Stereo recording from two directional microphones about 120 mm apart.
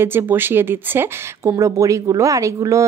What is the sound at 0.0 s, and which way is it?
Speech, 20° right (ahead or behind).